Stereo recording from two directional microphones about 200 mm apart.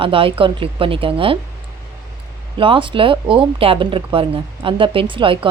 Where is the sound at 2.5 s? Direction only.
25° right (ahead or behind).